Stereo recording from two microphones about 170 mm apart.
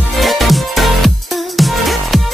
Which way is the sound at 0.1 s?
Centre (ahead or behind).